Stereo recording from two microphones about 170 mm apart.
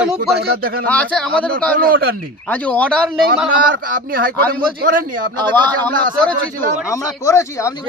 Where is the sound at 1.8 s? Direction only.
60° right (ahead or behind).